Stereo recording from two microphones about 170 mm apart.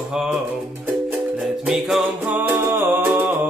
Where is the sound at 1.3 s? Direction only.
5° right (ahead or behind).